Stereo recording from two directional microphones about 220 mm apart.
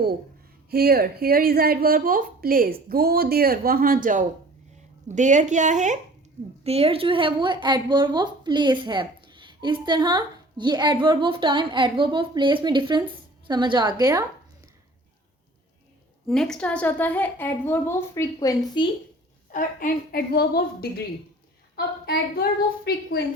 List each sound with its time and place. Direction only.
0.7 s a woman's voice: 45° right (ahead or behind); by 14.3 s 15° right (ahead or behind)
16.2 s a woman's voice: centre (ahead or behind); by 18.9 s 20° left (ahead or behind)
19.5 s a woman's voice: 40° left (ahead or behind)